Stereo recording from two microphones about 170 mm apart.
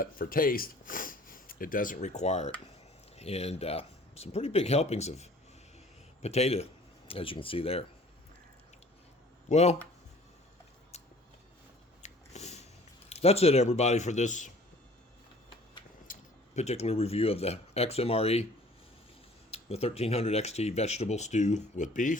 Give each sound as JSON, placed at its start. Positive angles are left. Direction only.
{"t": 0.0, "sound": "speech", "side_deg": 55}
{"t": 9.5, "sound": "speech", "side_deg": 40}
{"t": 12.0, "sound": "a sound", "side_deg": 40}
{"t": 13.1, "sound": "speech", "side_deg": 35}
{"t": 16.1, "sound": "a sound", "side_deg": 55}
{"t": 16.6, "sound": "speech", "side_deg": 40}
{"t": 19.5, "sound": "speech", "side_deg": 35}